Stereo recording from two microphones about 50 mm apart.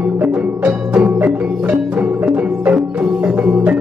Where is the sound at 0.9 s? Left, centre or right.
Right.